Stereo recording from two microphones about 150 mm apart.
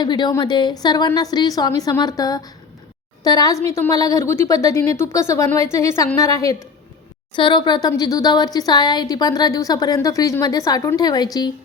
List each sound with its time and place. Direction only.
0.0 s speech: 30° left (ahead or behind)